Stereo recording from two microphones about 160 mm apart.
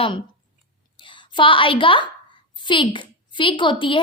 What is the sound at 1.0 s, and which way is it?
A woman's voice, 30° left (ahead or behind).